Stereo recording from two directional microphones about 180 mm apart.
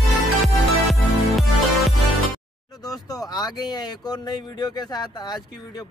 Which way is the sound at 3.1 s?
20° left (ahead or behind).